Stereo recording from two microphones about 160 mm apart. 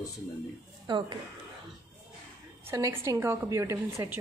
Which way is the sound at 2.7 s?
20° right (ahead or behind).